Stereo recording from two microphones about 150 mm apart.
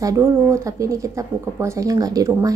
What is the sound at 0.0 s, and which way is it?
A woman's voice, 20° right (ahead or behind).